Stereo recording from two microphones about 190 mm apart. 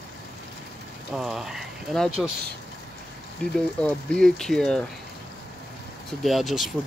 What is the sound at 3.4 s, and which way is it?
Speech, 5° left (ahead or behind).